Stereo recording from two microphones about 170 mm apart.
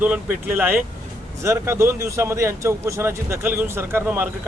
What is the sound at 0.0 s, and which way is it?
Speech, 10° right (ahead or behind).